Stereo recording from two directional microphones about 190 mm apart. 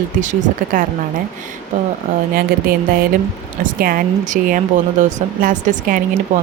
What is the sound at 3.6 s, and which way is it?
Speech, 45° right (ahead or behind).